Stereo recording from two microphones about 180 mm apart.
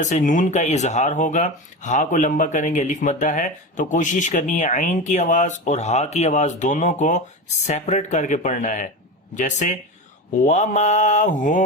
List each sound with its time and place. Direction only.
0.0 s speech: 45° left (ahead or behind)